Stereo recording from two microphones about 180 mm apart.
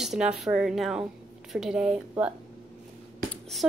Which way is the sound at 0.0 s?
Centre (ahead or behind).